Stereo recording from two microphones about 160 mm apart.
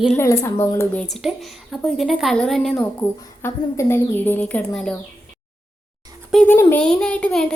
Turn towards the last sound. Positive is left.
turn(degrees=5)  # may be behind; listen again after turning